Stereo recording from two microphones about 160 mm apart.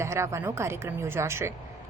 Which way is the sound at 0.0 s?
15° right (ahead or behind).